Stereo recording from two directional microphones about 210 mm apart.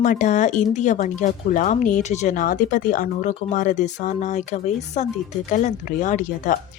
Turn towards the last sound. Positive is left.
turn(degrees=35)  # may be behind; listen again after turning